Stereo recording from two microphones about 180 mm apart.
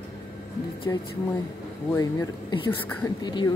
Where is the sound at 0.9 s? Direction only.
20° left (ahead or behind).